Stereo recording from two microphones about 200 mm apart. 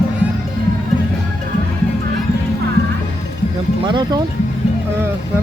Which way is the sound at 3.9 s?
25° right (ahead or behind).